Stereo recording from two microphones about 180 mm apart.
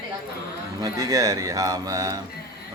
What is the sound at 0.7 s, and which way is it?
A man's voice, 20° right (ahead or behind).